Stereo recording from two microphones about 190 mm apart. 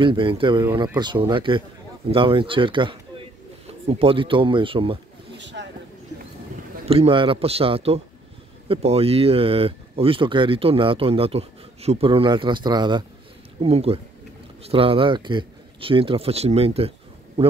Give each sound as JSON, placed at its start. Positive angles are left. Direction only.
{"t": 0.0, "sound": "speech", "side_deg": -25}
{"t": 5.4, "sound": "a sound", "side_deg": -70}
{"t": 6.9, "sound": "a man's voice", "side_deg": -30}